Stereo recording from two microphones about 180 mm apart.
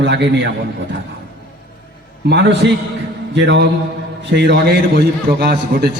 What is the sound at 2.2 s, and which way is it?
A man's voice, 70° right (ahead or behind).